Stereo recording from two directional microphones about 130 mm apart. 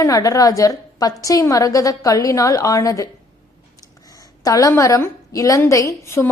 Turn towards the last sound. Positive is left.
turn(degrees=20)  # may be behind; listen again after turning